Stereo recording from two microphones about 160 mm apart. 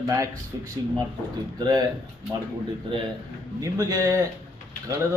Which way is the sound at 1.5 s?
25° right (ahead or behind).